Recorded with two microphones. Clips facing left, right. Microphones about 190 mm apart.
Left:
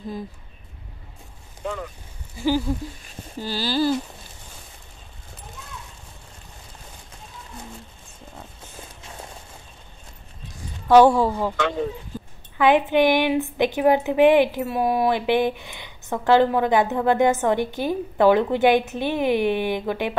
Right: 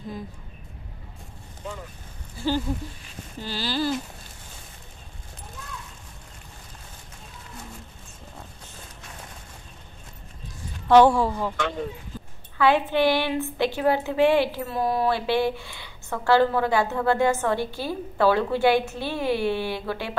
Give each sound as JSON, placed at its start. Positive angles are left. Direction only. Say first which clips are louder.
{"t": 1.6, "sound": "speech", "louder": "left 7 dB", "side_deg": 75}
{"t": 2.3, "sound": "a sound", "louder": "left 4 dB", "side_deg": 10}
{"t": 3.3, "sound": "speech", "louder": "left 4 dB", "side_deg": 35}
{"t": 10.9, "sound": "a woman's voice", "louder": "left 2 dB", "side_deg": 10}
{"t": 11.2, "sound": "speech", "louder": "left 3 dB", "side_deg": 25}
{"t": 12.5, "sound": "a woman's voice", "louder": "left 3 dB", "side_deg": 15}